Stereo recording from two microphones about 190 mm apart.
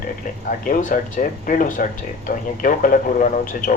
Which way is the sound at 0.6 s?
45° left (ahead or behind).